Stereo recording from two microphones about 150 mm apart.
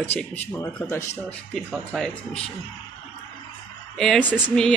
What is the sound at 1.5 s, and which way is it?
Speech, centre (ahead or behind).